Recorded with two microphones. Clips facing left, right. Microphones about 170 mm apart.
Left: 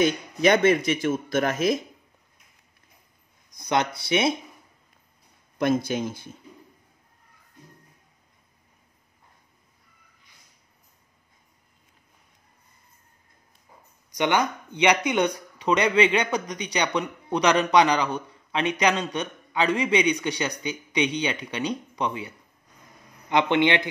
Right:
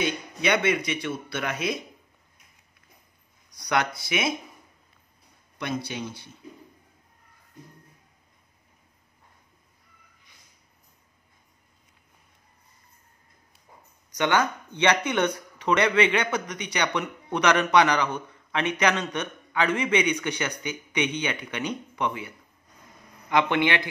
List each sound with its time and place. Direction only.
0.0 s speech: 40° left (ahead or behind)
3.5 s speech: 20° left (ahead or behind)
5.9 s speech: 45° left (ahead or behind)
14.1 s a man's voice: 15° left (ahead or behind)